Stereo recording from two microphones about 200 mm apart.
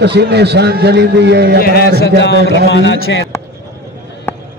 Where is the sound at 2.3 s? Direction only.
55° right (ahead or behind).